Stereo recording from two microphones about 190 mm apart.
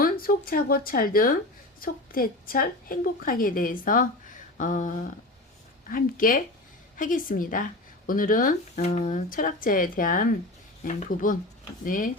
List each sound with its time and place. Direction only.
0.0 s a woman's voice: 50° left (ahead or behind)